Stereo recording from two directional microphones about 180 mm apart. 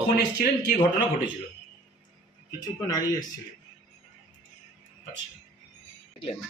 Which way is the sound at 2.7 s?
20° left (ahead or behind).